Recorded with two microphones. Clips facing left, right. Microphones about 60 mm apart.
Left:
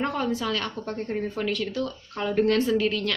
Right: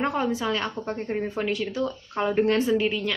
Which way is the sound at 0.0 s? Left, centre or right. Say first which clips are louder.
Right 1 dB; centre.